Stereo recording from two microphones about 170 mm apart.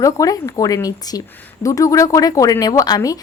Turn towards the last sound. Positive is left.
turn(degrees=20)  # may be behind; listen again after turning